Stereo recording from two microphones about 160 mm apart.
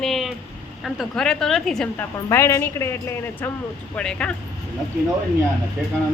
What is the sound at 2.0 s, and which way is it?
Speech, 15° left (ahead or behind).